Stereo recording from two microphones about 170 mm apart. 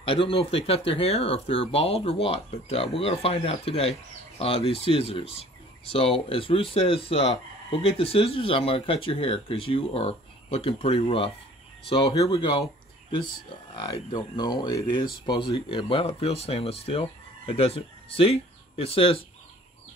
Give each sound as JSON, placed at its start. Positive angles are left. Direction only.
{"t": 0.0, "sound": "speech", "side_deg": 30}
{"t": 13.7, "sound": "speech", "side_deg": 25}